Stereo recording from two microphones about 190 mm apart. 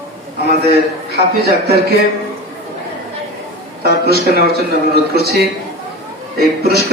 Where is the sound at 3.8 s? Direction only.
55° right (ahead or behind).